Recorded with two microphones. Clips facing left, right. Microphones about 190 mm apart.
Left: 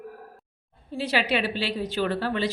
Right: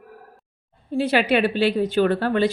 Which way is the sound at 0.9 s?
55° right (ahead or behind).